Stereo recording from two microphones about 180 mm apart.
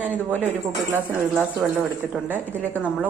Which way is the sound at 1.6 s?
5° right (ahead or behind).